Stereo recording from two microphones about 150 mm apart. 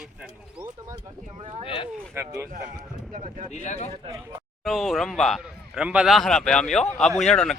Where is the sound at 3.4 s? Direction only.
50° left (ahead or behind).